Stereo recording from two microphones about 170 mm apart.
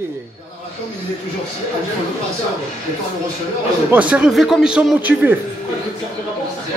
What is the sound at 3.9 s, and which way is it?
A man's voice, 10° right (ahead or behind).